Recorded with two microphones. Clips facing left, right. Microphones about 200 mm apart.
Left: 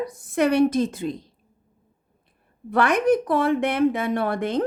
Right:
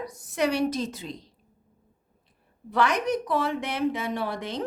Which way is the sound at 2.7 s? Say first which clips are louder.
Left 6 dB; 55° left (ahead or behind).